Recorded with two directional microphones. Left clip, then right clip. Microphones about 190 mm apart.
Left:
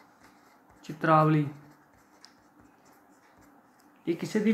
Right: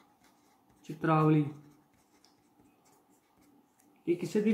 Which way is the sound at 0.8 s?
25° left (ahead or behind).